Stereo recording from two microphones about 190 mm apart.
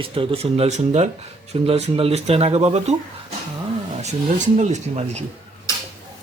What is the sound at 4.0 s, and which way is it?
Speech, 35° right (ahead or behind).